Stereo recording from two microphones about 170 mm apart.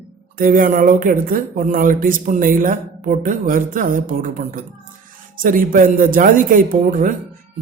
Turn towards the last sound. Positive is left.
turn(degrees=-50)  # may be behind; listen again after turning